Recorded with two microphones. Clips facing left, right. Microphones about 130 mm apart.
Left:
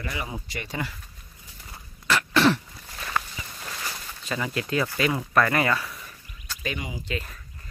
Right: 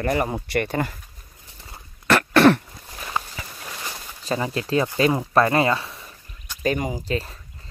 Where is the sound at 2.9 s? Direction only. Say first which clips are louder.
Right 1 dB; 15° right (ahead or behind).